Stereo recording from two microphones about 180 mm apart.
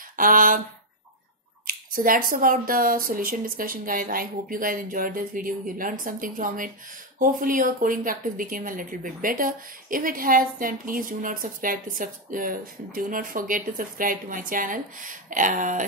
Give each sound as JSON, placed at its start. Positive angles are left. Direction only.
{"t": 0.1, "sound": "speech", "side_deg": -50}
{"t": 1.7, "sound": "a woman's voice", "side_deg": -50}